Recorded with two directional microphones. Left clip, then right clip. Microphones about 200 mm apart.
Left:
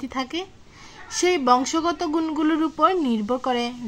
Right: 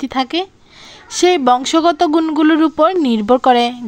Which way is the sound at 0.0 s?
35° right (ahead or behind).